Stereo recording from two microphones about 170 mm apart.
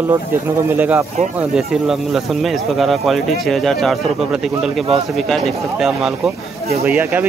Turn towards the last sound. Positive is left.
turn(degrees=-10)  # may be behind; listen again after turning